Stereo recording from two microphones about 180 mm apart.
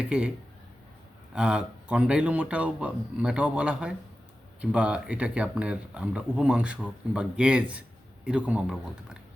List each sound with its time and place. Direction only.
1.3 s speech: 5° right (ahead or behind)